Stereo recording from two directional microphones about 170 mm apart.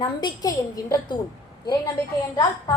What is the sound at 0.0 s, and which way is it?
A woman's voice, 25° left (ahead or behind).